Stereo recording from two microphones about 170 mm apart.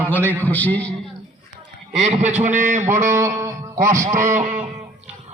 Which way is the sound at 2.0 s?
40° right (ahead or behind).